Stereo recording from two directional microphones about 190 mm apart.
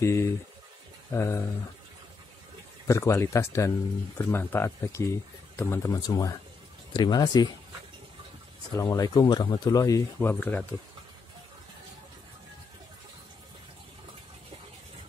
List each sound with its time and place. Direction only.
0.0 s speech: 15° left (ahead or behind)
2.9 s speech: 15° left (ahead or behind)
8.7 s speech: 15° left (ahead or behind)